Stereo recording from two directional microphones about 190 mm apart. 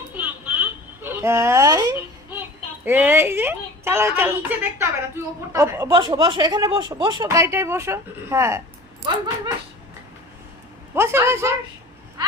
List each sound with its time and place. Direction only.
0.1 s a sound: 10° right (ahead or behind)
2.8 s speech: 10° right (ahead or behind)
10.9 s speech: 15° right (ahead or behind)